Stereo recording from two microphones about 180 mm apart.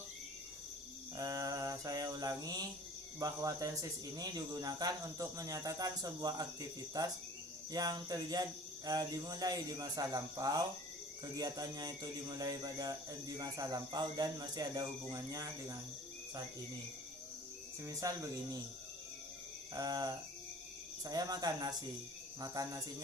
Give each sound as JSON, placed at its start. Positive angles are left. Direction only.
{"t": 1.1, "sound": "mantra", "side_deg": -20}
{"t": 3.2, "sound": "speech", "side_deg": -20}
{"t": 17.8, "sound": "speech", "side_deg": -20}
{"t": 19.7, "sound": "speech", "side_deg": -20}